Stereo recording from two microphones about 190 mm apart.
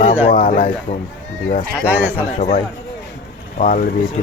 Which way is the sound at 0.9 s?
35° left (ahead or behind).